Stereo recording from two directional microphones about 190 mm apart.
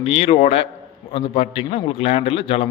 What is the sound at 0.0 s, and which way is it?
A man's voice, 30° left (ahead or behind).